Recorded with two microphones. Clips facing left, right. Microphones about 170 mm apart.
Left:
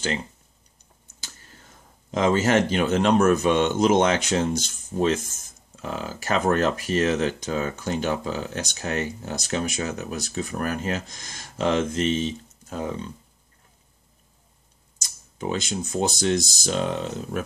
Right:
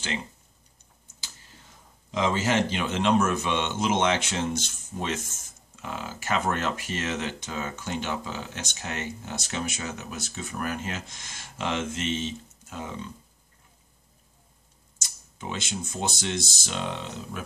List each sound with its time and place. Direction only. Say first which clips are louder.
2.0 s a man's voice: left 5 dB; 50° left (ahead or behind)
15.3 s speech: left 6 dB; 40° left (ahead or behind)